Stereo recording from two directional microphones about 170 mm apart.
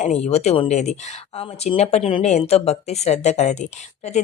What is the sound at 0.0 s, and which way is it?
Speech, 40° left (ahead or behind).